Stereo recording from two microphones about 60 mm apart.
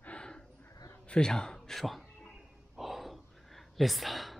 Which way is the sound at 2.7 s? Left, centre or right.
Centre.